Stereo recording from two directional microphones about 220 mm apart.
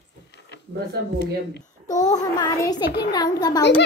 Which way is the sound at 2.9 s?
45° left (ahead or behind).